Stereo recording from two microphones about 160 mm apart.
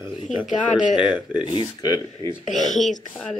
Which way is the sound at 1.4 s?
30° left (ahead or behind).